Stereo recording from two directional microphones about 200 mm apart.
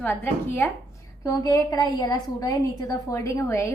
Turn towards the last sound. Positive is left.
turn(degrees=15)  # may be behind; listen again after turning